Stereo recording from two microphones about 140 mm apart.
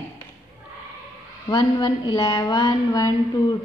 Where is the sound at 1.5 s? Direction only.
30° left (ahead or behind).